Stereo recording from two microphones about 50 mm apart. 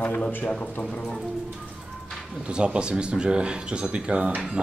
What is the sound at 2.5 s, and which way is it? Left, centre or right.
Speech, centre.